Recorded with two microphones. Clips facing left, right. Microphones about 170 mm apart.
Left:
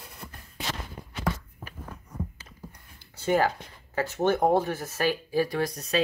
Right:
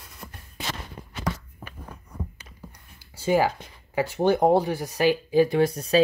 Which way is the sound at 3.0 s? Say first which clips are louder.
Right 2 dB; 10° right (ahead or behind).